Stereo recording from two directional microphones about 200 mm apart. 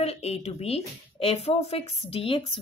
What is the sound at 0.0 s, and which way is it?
A woman's voice, 30° left (ahead or behind).